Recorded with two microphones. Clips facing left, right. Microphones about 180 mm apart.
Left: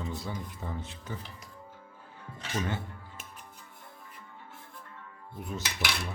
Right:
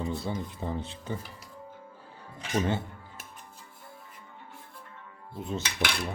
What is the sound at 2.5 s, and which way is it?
Speech, 25° right (ahead or behind).